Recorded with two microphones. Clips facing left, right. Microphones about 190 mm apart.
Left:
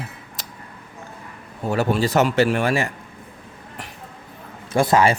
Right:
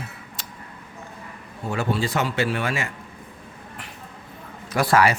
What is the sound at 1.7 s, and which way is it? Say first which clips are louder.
Speech: left 5 dB; 40° left (ahead or behind).